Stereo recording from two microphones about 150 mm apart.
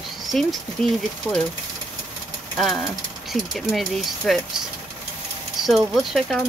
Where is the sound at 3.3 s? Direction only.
Centre (ahead or behind).